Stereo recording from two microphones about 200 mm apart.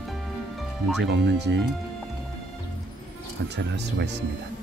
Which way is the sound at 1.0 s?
60° right (ahead or behind).